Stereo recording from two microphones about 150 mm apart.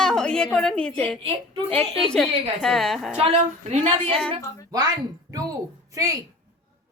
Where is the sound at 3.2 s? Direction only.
45° right (ahead or behind).